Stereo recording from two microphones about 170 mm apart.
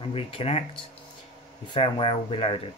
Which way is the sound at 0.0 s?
30° left (ahead or behind).